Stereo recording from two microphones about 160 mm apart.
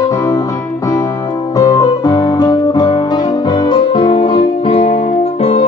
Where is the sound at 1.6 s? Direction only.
20° left (ahead or behind).